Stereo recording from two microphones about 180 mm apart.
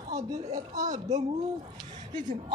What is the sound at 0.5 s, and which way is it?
Speech, 20° right (ahead or behind).